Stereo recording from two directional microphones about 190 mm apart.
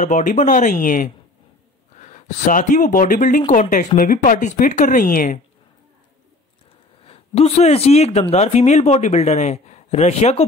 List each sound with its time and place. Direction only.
0.0 s speech: 40° left (ahead or behind)
7.1 s speech: 30° left (ahead or behind)